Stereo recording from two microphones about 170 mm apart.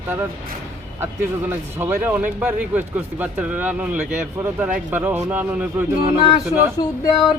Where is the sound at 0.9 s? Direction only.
15° right (ahead or behind).